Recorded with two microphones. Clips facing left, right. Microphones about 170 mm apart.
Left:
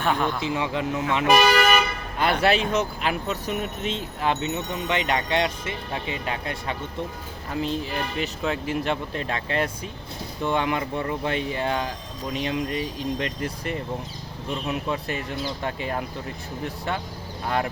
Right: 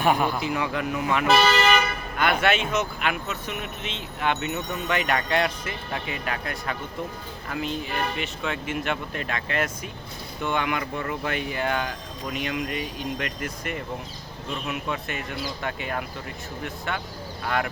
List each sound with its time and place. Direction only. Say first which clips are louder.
0.0 s a man's voice: right 2 dB; 10° right (ahead or behind)
0.4 s speech: left 1 dB; 25° left (ahead or behind)
1.3 s speech: left 2 dB; 10° left (ahead or behind)
2.1 s speech: left 2 dB; 35° left (ahead or behind)